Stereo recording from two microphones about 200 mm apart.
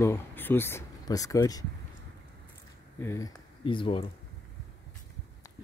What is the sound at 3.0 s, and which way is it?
Speech, 15° left (ahead or behind).